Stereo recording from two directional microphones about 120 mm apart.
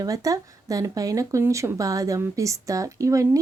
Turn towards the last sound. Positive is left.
turn(degrees=-25)  # may be behind; listen again after turning